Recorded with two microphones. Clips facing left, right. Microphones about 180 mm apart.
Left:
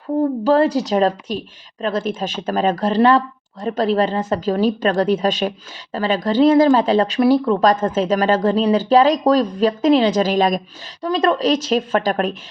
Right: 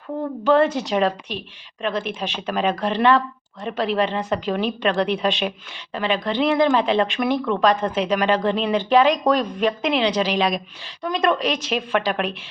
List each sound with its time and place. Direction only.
0.4 s speech: 35° left (ahead or behind)
11.0 s speech: 35° left (ahead or behind)